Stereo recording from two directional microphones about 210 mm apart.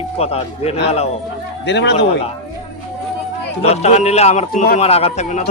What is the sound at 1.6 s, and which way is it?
Speech, 55° left (ahead or behind).